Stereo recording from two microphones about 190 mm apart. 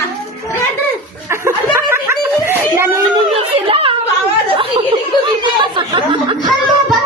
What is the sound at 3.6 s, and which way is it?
Chatter, 30° right (ahead or behind).